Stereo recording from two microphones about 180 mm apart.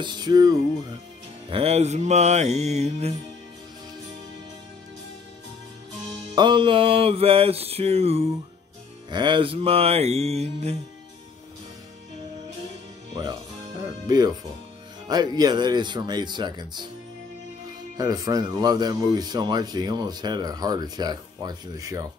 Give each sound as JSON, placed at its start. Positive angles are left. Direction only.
{"t": 0.0, "sound": "speech", "side_deg": -25}
{"t": 1.5, "sound": "music", "side_deg": -35}
{"t": 6.3, "sound": "music", "side_deg": -25}
{"t": 13.1, "sound": "speech", "side_deg": -20}
{"t": 17.9, "sound": "speech", "side_deg": -20}